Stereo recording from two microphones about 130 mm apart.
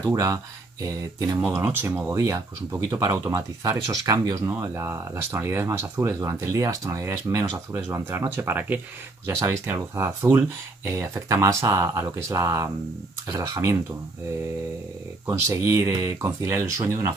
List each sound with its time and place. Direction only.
0.1 s speech: 25° right (ahead or behind)
1.4 s speech: 15° right (ahead or behind)
15.2 s speech: 25° right (ahead or behind)